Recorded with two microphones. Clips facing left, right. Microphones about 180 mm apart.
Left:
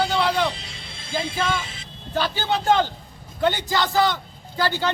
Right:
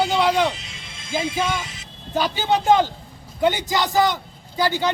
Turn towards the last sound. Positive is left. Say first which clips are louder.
# right 2 dB
turn(degrees=-15)  # may be behind; listen again after turning